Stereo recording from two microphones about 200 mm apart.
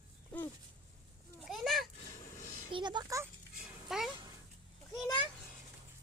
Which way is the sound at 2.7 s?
25° right (ahead or behind).